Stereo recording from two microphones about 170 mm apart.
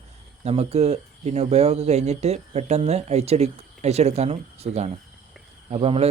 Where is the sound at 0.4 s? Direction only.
40° right (ahead or behind).